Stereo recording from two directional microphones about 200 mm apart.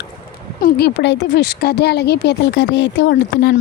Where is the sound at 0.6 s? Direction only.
55° left (ahead or behind).